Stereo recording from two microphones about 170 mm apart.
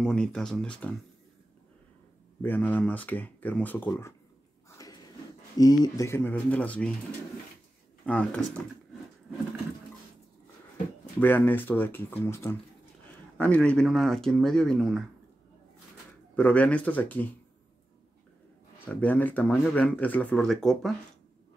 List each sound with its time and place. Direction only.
0.0 s speech: 5° left (ahead or behind)
2.4 s speech: 10° left (ahead or behind)
4.6 s a sound: 20° left (ahead or behind)
5.6 s speech: 20° left (ahead or behind)
8.0 s speech: 10° left (ahead or behind)
11.1 s speech: 10° left (ahead or behind)
16.3 s speech: 10° left (ahead or behind)
18.9 s speech: 10° left (ahead or behind)